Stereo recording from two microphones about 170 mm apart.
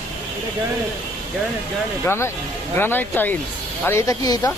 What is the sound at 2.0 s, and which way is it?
Speech, 15° left (ahead or behind).